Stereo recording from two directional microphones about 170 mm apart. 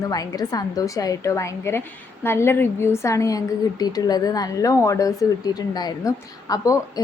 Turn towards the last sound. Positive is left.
turn(degrees=20)  # may be behind; listen again after turning